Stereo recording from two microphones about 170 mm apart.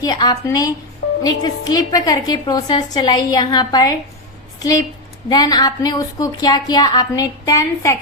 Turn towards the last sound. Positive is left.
turn(degrees=20)  # may be behind; listen again after turning